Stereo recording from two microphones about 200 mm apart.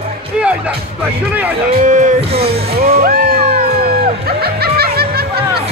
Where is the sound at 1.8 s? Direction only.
40° right (ahead or behind).